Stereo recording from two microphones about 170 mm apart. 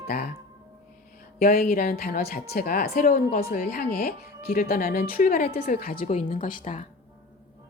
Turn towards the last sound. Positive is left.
turn(degrees=50)  # may be behind; listen again after turning